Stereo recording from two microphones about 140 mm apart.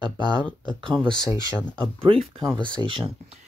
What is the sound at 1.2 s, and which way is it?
Speech, 30° left (ahead or behind).